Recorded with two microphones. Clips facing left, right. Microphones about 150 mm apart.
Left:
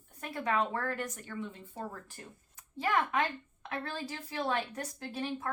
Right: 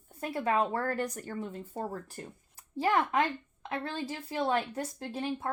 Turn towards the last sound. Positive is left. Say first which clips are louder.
# right 2 dB
turn(degrees=-30)  # may be behind; listen again after turning